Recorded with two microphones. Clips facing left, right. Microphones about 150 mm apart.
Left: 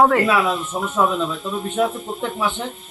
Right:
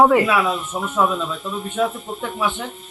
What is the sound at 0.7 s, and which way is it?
Speech, centre (ahead or behind).